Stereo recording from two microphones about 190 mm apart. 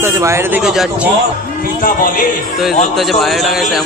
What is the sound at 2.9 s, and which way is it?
Speech, centre (ahead or behind).